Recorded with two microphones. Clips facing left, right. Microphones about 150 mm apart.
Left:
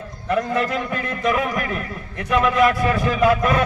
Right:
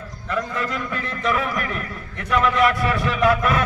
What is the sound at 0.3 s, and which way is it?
Speech, 25° left (ahead or behind).